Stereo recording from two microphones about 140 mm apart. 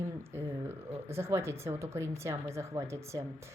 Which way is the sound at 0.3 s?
15° right (ahead or behind).